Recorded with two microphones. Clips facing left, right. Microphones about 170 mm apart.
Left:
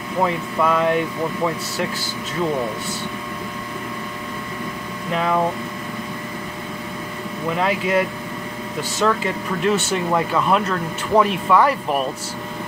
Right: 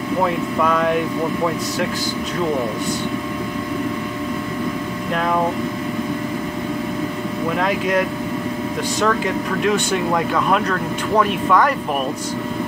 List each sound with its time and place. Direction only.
0.6 s speech: 5° left (ahead or behind)
5.1 s speech: centre (ahead or behind)
7.5 s speech: 5° left (ahead or behind)
9.0 s speech: centre (ahead or behind)